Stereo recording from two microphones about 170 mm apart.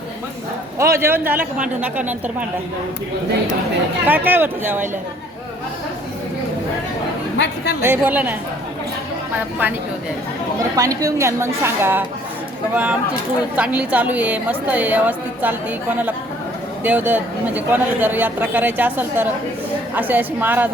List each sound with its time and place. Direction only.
0.8 s a woman's voice: 15° right (ahead or behind)
4.0 s a woman's voice: 10° right (ahead or behind)
7.3 s a woman's voice: 75° left (ahead or behind)
7.8 s a woman's voice: 10° right (ahead or behind)
10.8 s a woman's voice: 20° right (ahead or behind)